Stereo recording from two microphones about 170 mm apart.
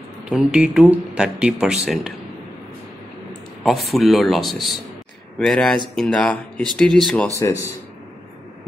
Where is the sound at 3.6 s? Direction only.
Centre (ahead or behind).